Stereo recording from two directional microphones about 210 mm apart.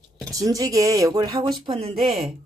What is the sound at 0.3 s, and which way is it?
Speech, 15° right (ahead or behind).